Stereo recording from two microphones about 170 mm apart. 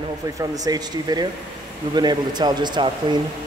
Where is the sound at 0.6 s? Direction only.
25° right (ahead or behind).